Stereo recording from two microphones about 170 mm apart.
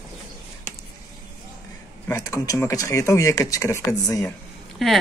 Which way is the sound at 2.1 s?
20° left (ahead or behind).